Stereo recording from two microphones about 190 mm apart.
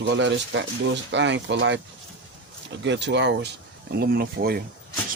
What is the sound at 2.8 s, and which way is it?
Speech, 70° right (ahead or behind).